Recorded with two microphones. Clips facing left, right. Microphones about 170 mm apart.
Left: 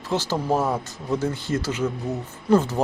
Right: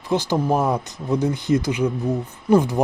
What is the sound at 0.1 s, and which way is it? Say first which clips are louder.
Speech: right 3 dB; 15° right (ahead or behind).